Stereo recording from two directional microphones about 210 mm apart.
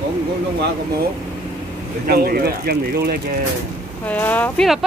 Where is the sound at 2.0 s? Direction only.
45° right (ahead or behind).